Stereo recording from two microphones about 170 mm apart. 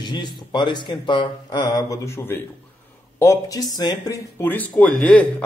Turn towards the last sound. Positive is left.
turn(degrees=5)  # may be behind; listen again after turning